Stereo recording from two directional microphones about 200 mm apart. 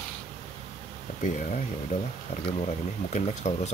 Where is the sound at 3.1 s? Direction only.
35° left (ahead or behind).